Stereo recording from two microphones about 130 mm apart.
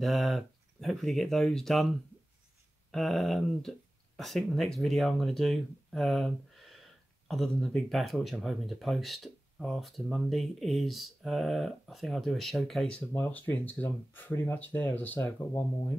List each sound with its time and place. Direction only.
0.0 s speech: centre (ahead or behind); by 15.6 s 15° left (ahead or behind)